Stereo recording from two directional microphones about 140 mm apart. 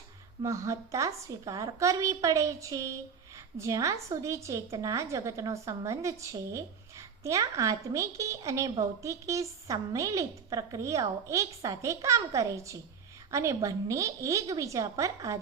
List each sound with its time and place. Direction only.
0.4 s a woman's voice: 20° right (ahead or behind)